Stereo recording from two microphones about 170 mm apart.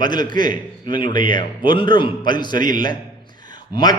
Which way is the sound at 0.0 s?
25° left (ahead or behind).